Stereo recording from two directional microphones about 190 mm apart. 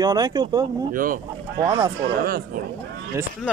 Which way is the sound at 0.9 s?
45° right (ahead or behind).